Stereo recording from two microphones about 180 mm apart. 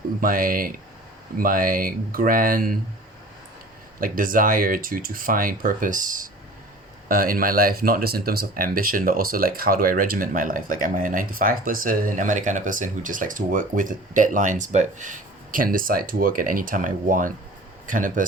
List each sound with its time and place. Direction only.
0.2 s speech: 50° right (ahead or behind)
4.0 s speech: 50° right (ahead or behind)